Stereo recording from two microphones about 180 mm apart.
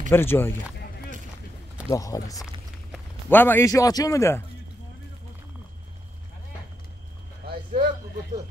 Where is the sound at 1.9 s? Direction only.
20° left (ahead or behind).